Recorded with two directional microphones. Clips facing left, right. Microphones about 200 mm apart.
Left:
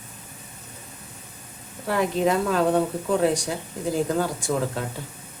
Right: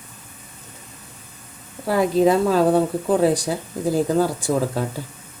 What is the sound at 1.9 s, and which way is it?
Speech, 35° right (ahead or behind).